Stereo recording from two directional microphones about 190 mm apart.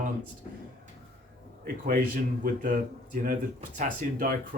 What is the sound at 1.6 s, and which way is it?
Speech, 45° right (ahead or behind).